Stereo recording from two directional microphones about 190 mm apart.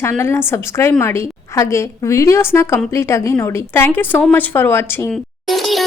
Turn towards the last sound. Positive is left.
turn(degrees=0)  # may be behind; listen again after turning